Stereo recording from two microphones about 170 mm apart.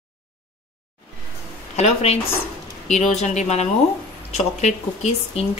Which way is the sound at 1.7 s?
40° left (ahead or behind).